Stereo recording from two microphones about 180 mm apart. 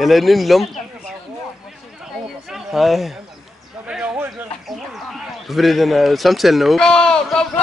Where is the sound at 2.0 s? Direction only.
Centre (ahead or behind).